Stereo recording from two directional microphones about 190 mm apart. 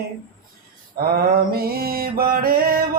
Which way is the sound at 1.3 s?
55° right (ahead or behind).